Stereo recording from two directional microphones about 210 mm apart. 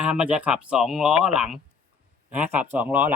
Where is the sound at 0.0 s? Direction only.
5° right (ahead or behind).